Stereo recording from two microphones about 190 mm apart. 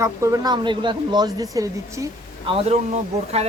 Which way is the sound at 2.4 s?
30° right (ahead or behind).